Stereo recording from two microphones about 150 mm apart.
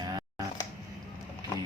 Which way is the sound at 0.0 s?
25° right (ahead or behind).